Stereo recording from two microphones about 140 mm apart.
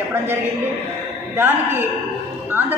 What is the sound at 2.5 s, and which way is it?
Music, 15° right (ahead or behind).